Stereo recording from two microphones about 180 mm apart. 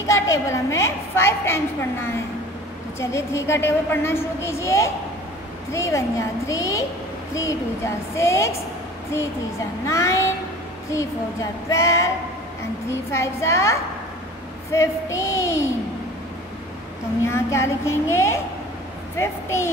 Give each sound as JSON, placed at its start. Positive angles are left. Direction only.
{"t": 0.0, "sound": "a woman's voice", "side_deg": 15}
{"t": 9.8, "sound": "a woman's voice", "side_deg": 15}
{"t": 11.7, "sound": "a woman's voice", "side_deg": 15}
{"t": 17.3, "sound": "a woman's voice", "side_deg": 15}